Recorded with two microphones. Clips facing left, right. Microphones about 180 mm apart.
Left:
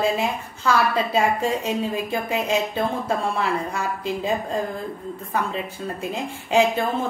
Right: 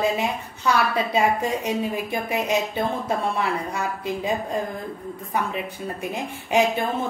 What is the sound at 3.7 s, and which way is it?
Speech, 15° right (ahead or behind).